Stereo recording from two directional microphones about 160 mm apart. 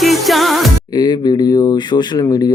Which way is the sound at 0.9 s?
25° left (ahead or behind).